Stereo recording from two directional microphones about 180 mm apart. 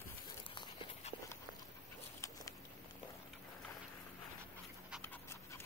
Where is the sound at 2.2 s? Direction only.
15° left (ahead or behind).